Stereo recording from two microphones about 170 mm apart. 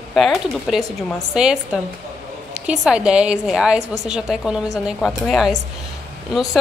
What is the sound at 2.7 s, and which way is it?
A woman's voice, 5° right (ahead or behind).